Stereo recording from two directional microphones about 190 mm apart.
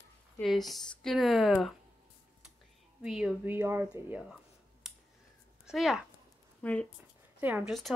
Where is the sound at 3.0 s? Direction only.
5° right (ahead or behind).